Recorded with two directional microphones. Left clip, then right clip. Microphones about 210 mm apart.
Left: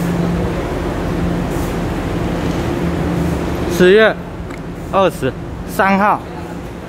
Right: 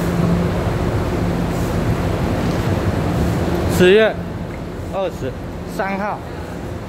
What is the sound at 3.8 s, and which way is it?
Speech, centre (ahead or behind).